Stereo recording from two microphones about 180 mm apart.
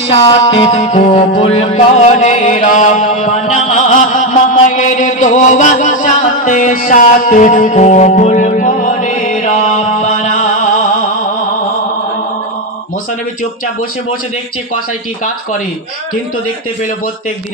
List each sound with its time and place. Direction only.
0.1 s music: 35° left (ahead or behind)